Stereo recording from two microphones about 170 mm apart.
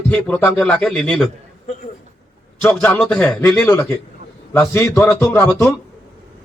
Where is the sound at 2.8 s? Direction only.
5° left (ahead or behind).